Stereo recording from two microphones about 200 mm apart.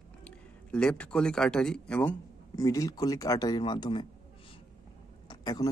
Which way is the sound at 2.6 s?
15° left (ahead or behind).